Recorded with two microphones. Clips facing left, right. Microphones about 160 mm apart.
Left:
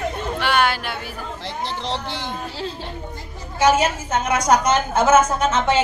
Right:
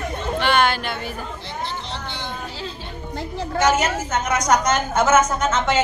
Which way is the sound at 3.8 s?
30° left (ahead or behind).